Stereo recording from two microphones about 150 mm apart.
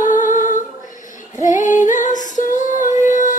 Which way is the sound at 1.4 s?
60° left (ahead or behind).